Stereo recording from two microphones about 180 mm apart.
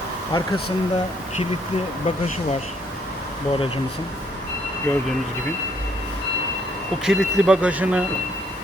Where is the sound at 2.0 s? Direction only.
35° left (ahead or behind).